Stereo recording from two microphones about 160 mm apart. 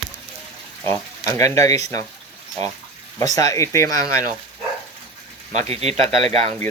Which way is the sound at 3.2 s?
20° left (ahead or behind).